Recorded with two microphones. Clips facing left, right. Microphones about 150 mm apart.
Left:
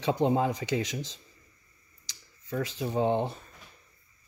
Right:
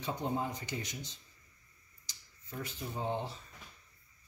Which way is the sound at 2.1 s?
90° left.